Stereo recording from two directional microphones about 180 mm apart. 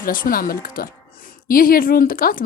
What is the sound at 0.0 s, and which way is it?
Speech, 50° left (ahead or behind).